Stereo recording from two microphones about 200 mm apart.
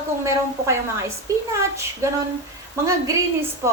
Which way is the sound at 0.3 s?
15° right (ahead or behind).